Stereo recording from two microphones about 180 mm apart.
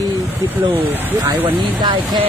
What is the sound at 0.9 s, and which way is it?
Speech, 10° right (ahead or behind).